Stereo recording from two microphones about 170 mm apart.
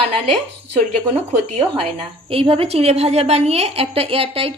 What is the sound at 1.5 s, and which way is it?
A woman's voice, 35° right (ahead or behind).